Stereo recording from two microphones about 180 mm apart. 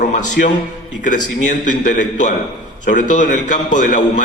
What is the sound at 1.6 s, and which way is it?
A man's voice, 45° left (ahead or behind).